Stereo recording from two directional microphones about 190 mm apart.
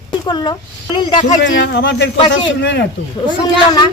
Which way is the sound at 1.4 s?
75° left (ahead or behind).